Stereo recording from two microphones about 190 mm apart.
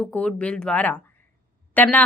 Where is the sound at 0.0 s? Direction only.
5° left (ahead or behind).